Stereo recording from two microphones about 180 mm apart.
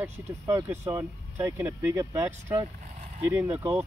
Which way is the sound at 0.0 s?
15° right (ahead or behind).